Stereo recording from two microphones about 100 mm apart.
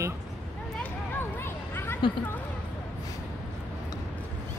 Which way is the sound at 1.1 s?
25° left (ahead or behind).